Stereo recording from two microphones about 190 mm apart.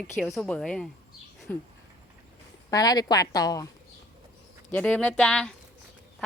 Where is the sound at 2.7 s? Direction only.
20° left (ahead or behind).